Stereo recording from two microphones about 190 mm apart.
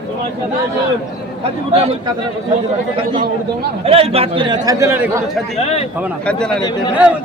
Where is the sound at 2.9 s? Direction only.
30° right (ahead or behind).